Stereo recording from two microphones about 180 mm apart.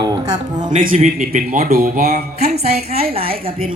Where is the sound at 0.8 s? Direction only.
50° right (ahead or behind).